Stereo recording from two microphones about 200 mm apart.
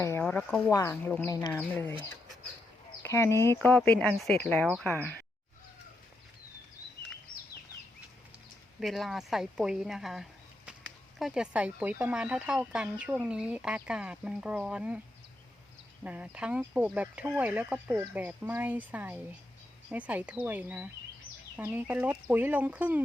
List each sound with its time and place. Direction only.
0.0 s speech: 10° left (ahead or behind)
3.0 s speech: 15° left (ahead or behind)
8.8 s speech: centre (ahead or behind)
16.0 s speech: 5° right (ahead or behind)